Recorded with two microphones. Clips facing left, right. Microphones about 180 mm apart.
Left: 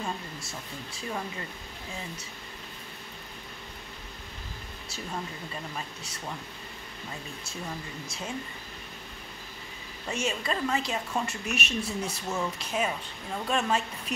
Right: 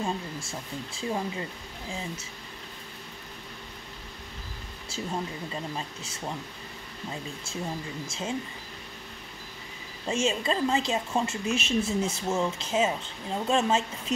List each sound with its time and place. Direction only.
0.0 s a woman's voice: 25° right (ahead or behind)
4.8 s a woman's voice: 25° right (ahead or behind)
7.4 s a woman's voice: 25° right (ahead or behind)
10.0 s a woman's voice: 25° right (ahead or behind)